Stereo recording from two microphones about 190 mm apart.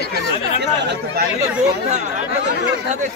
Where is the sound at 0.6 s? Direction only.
60° right (ahead or behind).